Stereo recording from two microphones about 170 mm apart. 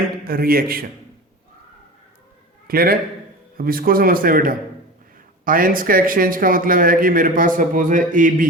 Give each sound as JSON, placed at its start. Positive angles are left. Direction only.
{"t": 0.3, "sound": "a man's voice", "side_deg": -60}
{"t": 2.6, "sound": "a man's voice", "side_deg": -60}